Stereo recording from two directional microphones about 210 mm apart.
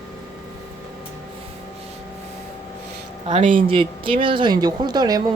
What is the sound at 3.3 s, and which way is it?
Speech, 35° right (ahead or behind).